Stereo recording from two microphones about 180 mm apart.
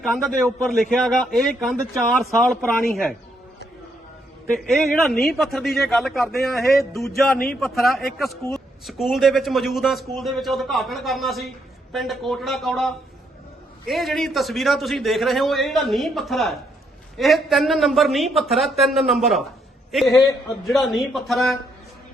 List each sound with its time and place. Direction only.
0.0 s a man's voice: centre (ahead or behind)
4.7 s a man's voice: centre (ahead or behind)
20.1 s a man's voice: 15° left (ahead or behind)
20.7 s a man's voice: centre (ahead or behind)